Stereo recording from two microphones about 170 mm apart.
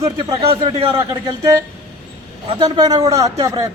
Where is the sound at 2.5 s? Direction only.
25° right (ahead or behind).